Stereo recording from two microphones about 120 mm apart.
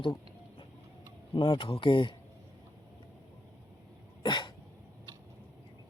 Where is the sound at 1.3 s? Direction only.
45° left (ahead or behind).